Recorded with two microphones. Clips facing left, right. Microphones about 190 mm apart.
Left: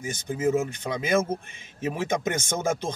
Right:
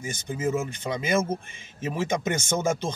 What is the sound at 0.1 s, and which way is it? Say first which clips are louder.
Speech: left 3 dB; 10° left (ahead or behind).